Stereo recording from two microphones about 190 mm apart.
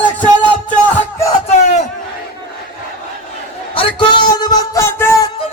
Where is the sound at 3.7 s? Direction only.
30° left (ahead or behind).